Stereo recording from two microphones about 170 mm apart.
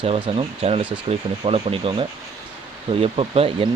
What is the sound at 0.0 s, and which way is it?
Speech, 35° right (ahead or behind).